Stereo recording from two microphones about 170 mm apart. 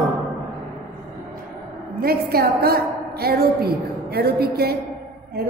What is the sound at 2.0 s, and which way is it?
A woman's voice, 65° right (ahead or behind).